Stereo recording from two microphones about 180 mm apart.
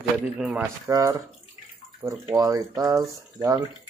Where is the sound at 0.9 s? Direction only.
20° right (ahead or behind).